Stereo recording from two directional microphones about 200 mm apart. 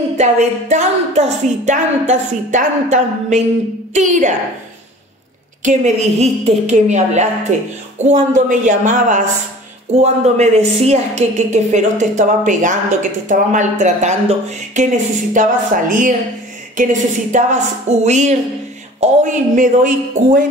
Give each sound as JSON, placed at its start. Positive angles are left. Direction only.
{"t": 0.2, "sound": "a woman's voice", "side_deg": -35}
{"t": 5.6, "sound": "a woman's voice", "side_deg": -35}